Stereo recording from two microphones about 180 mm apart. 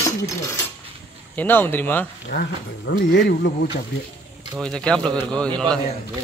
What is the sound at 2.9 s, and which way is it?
Speech, 75° left (ahead or behind).